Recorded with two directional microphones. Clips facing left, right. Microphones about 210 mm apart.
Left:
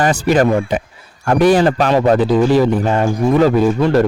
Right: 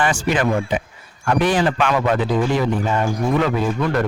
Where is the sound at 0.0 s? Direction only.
40° left (ahead or behind).